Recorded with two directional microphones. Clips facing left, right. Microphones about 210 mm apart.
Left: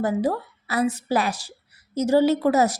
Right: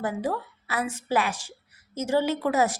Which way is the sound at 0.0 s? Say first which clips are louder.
Left 5 dB; 40° left (ahead or behind).